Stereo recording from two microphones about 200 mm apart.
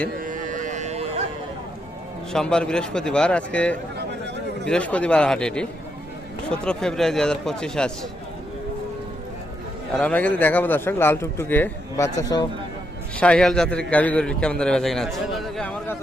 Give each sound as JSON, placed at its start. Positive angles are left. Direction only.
{"t": 0.2, "sound": "a sound", "side_deg": -40}
{"t": 2.3, "sound": "a man's voice", "side_deg": 5}
{"t": 9.9, "sound": "a man's voice", "side_deg": 5}
{"t": 13.1, "sound": "a man's voice", "side_deg": 5}